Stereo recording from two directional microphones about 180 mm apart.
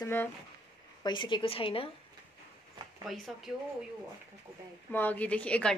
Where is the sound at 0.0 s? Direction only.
15° left (ahead or behind).